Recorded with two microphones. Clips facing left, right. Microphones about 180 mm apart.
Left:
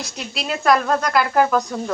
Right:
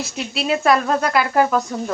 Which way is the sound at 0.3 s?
5° right (ahead or behind).